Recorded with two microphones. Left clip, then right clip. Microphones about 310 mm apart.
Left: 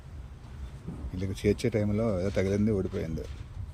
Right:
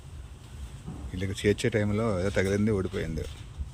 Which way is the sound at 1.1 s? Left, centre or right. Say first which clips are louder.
Right 2 dB; centre.